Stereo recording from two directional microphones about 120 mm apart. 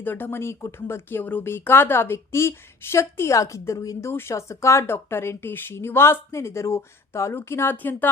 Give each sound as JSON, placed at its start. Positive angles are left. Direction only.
{"t": 0.0, "sound": "speech", "side_deg": 15}